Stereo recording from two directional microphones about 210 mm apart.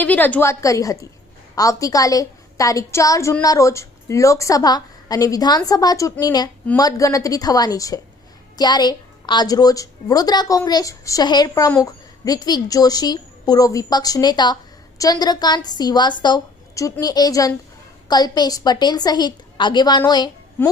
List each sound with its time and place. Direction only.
0.0 s a woman's voice: 10° left (ahead or behind)